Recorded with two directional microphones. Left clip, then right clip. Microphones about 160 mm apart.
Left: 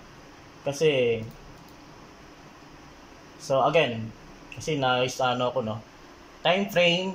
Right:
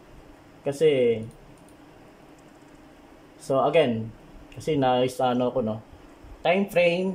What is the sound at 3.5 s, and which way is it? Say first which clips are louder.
Speech: right 1 dB; 25° right (ahead or behind).